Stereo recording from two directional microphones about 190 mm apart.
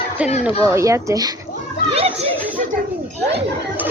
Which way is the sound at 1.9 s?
30° right (ahead or behind).